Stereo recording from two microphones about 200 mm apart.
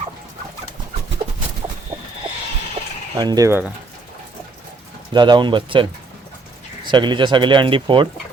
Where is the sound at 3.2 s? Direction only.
20° right (ahead or behind).